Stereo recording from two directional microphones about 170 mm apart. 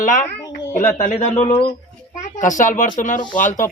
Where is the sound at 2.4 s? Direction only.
50° left (ahead or behind).